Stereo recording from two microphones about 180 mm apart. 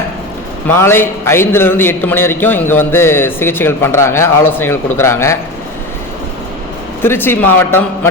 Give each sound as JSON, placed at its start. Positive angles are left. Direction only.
{"t": 0.7, "sound": "speech", "side_deg": 15}
{"t": 7.0, "sound": "speech", "side_deg": 10}